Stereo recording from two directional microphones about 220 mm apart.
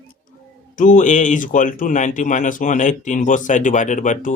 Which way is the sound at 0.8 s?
35° left (ahead or behind).